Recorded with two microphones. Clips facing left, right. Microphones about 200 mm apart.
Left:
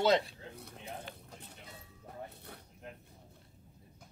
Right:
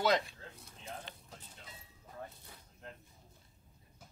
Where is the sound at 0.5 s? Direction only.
60° left (ahead or behind).